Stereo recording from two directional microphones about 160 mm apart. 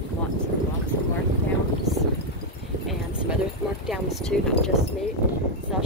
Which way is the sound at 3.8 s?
Centre (ahead or behind).